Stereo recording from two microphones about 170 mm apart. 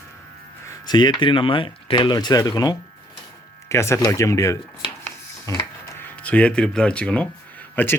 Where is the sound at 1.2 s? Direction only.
30° left (ahead or behind).